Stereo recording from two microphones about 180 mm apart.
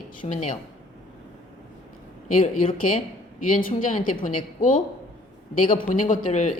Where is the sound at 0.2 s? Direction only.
45° left (ahead or behind).